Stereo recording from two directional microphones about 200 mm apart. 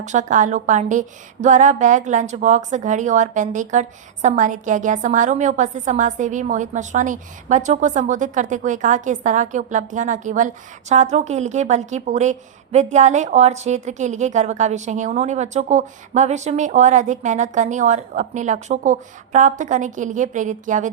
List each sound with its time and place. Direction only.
0.0 s a woman's voice: 35° right (ahead or behind)